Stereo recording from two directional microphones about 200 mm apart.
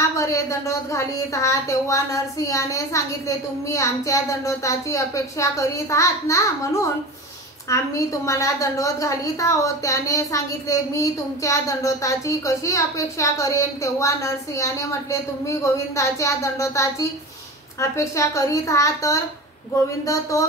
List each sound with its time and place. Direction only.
0.2 s a woman's voice: 15° left (ahead or behind)